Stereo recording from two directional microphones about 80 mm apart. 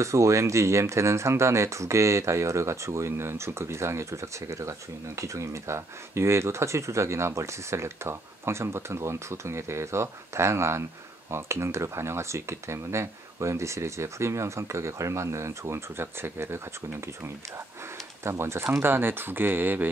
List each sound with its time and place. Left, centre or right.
0.0 s speech: right
18.2 s speech: right